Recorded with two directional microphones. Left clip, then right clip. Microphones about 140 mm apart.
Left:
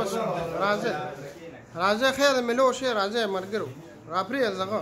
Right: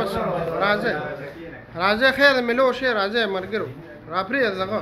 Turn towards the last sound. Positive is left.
turn(degrees=25)  # may be behind; listen again after turning